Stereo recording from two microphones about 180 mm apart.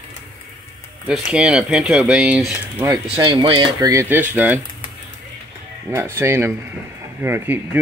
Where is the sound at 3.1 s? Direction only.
25° right (ahead or behind).